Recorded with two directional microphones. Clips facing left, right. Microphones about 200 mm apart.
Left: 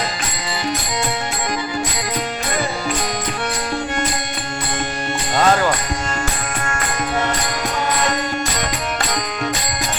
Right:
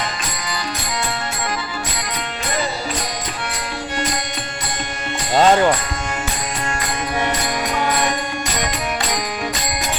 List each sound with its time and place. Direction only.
5.4 s speech: 25° right (ahead or behind)